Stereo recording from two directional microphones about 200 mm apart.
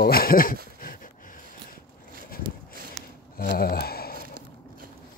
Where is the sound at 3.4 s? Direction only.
50° left (ahead or behind).